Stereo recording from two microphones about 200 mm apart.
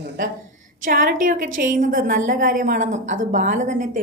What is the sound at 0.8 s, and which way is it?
A woman's voice, 40° right (ahead or behind).